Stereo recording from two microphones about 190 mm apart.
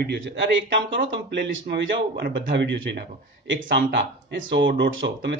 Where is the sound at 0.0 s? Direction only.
65° right (ahead or behind).